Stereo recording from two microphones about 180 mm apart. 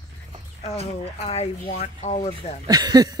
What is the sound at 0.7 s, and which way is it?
Speech, 35° left (ahead or behind).